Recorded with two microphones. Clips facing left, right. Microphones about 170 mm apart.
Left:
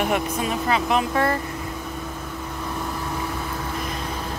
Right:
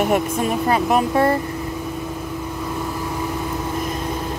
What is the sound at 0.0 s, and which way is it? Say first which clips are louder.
Speech: right 4 dB; 45° right (ahead or behind).